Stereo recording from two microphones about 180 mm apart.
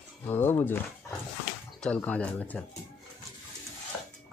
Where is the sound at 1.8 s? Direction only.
5° left (ahead or behind).